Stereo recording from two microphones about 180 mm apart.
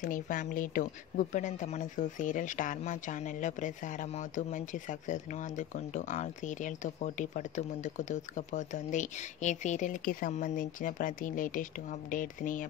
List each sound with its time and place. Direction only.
0.0 s a woman's voice: 45° left (ahead or behind)